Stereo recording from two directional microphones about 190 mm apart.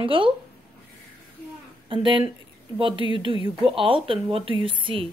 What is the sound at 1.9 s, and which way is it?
Speech, 25° right (ahead or behind).